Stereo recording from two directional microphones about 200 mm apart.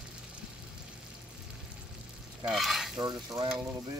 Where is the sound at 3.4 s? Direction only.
Centre (ahead or behind).